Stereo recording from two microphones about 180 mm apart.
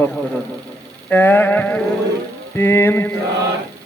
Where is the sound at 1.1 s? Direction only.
10° left (ahead or behind).